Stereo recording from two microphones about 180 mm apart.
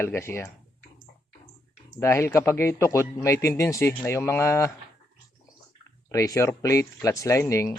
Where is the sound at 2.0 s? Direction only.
15° left (ahead or behind).